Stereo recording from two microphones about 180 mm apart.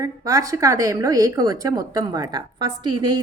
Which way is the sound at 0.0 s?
20° right (ahead or behind).